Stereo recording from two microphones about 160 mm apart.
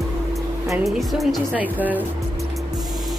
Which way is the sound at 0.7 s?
Centre (ahead or behind).